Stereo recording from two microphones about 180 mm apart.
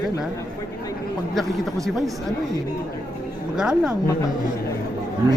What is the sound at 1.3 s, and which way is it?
Speech, centre (ahead or behind).